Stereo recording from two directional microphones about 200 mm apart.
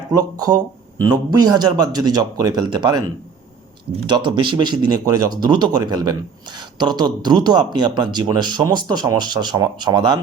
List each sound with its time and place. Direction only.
0.1 s speech: 20° right (ahead or behind)
4.0 s speech: 20° right (ahead or behind)